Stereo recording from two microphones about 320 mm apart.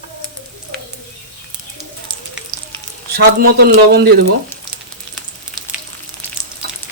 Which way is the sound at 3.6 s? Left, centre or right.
Right.